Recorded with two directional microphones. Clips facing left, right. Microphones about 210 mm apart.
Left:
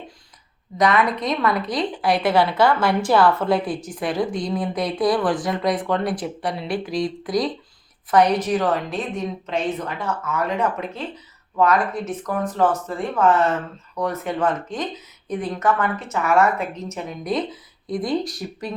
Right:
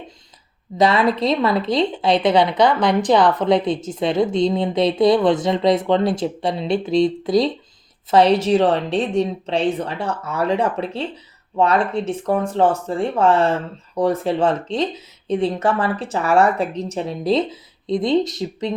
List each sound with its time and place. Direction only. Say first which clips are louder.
0.8 s a woman's voice: right 3 dB; 30° right (ahead or behind)